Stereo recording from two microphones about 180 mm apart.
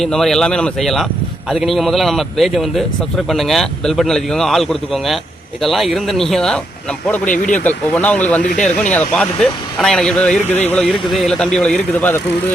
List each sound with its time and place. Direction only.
0.0 s speech: centre (ahead or behind)
7.9 s speech: 10° left (ahead or behind)